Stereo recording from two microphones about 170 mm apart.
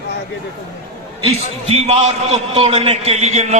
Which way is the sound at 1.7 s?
40° right (ahead or behind).